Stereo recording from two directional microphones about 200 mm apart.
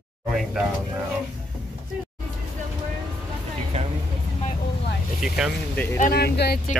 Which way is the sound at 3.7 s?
30° right (ahead or behind).